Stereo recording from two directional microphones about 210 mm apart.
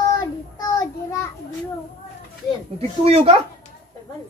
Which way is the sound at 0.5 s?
15° left (ahead or behind).